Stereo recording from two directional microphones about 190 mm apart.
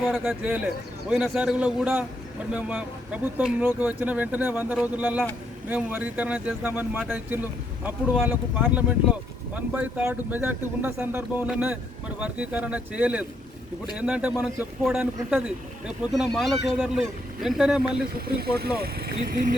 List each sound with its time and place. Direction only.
0.0 s a man's voice: centre (ahead or behind)
18.3 s speech: 55° right (ahead or behind)